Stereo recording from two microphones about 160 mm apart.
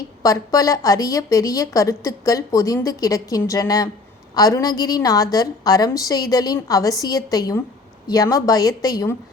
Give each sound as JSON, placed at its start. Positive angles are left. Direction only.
{"t": 0.2, "sound": "a woman's voice", "side_deg": 20}